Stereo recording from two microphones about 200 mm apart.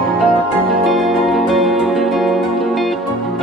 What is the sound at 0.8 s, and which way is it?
Music, centre (ahead or behind).